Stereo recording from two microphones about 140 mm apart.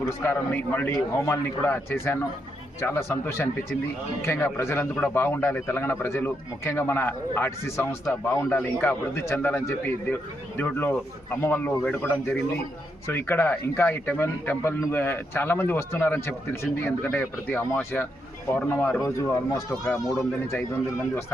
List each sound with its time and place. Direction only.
0.3 s speech: 15° left (ahead or behind)
19.7 s speech: centre (ahead or behind)